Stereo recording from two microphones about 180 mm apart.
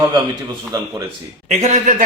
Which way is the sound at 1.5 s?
40° right (ahead or behind).